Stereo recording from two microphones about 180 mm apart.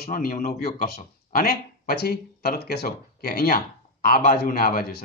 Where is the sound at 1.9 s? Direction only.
60° left (ahead or behind).